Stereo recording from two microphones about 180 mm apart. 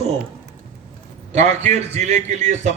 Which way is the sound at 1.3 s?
40° right (ahead or behind).